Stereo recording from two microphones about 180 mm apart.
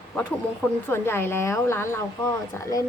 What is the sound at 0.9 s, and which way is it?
A woman's voice, 15° left (ahead or behind).